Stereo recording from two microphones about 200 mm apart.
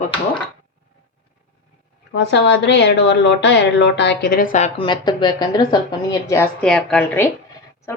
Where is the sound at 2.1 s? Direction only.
60° left (ahead or behind); by 6.4 s 20° left (ahead or behind).